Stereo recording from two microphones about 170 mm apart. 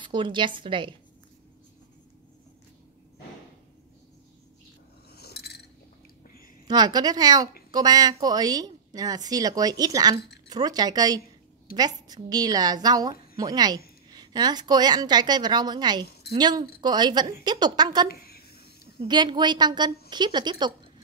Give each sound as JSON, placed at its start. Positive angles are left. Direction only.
{"t": 0.0, "sound": "a woman's voice", "side_deg": -30}
{"t": 5.1, "sound": "glass", "side_deg": 70}
{"t": 6.7, "sound": "a woman's voice", "side_deg": -25}
{"t": 18.2, "sound": "a sound", "side_deg": 65}
{"t": 18.9, "sound": "a woman's voice", "side_deg": -25}